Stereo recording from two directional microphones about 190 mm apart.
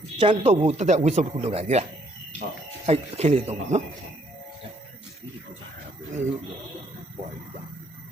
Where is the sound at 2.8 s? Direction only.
35° right (ahead or behind).